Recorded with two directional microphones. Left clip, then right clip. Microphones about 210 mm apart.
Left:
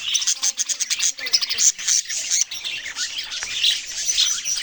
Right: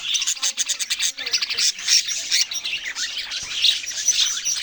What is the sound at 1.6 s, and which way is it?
Squawk, 15° left (ahead or behind).